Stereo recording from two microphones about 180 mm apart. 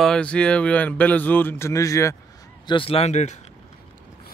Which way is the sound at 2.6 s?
30° left (ahead or behind).